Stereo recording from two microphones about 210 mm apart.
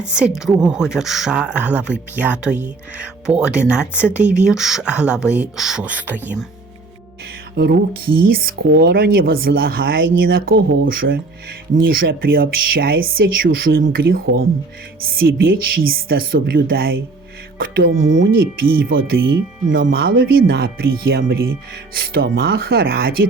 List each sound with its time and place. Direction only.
0.0 s speech: 5° right (ahead or behind)
7.5 s speech: 50° right (ahead or behind)
18.0 s speech: 65° right (ahead or behind)
18.7 s speech: 45° right (ahead or behind)